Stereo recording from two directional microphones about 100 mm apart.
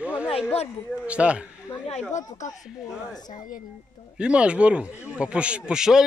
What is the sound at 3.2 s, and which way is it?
Speech, 40° left (ahead or behind).